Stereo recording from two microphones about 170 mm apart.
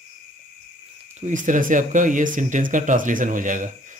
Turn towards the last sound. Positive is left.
turn(degrees=-50)  # may be behind; listen again after turning